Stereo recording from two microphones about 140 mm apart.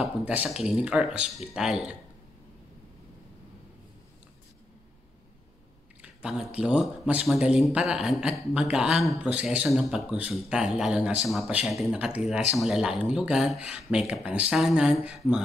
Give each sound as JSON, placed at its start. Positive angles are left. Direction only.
{"t": 0.0, "sound": "a man's voice", "side_deg": -10}
{"t": 6.0, "sound": "a man's voice", "side_deg": -5}